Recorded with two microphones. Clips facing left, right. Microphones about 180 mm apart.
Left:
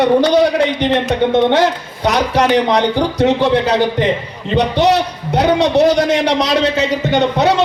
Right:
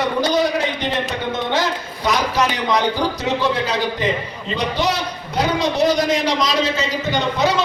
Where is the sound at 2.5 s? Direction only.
70° left (ahead or behind).